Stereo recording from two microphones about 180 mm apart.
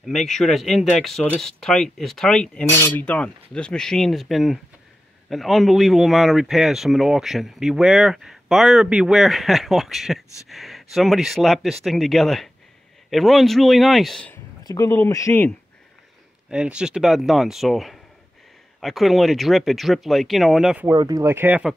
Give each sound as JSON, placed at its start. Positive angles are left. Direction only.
{"t": 0.0, "sound": "speech", "side_deg": 0}
{"t": 14.6, "sound": "speech", "side_deg": 20}
{"t": 16.4, "sound": "speech", "side_deg": -5}
{"t": 20.8, "sound": "speech", "side_deg": -20}